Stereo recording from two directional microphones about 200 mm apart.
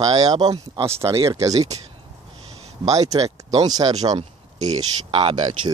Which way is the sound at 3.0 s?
30° right (ahead or behind).